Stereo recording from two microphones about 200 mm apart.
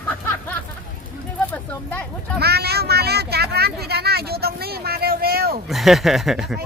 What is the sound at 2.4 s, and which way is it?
Speech, 50° right (ahead or behind).